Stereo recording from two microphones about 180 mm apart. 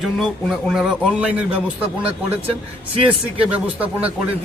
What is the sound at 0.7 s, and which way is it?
Speech, centre (ahead or behind).